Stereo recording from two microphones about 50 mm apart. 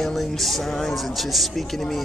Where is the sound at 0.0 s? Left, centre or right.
Centre.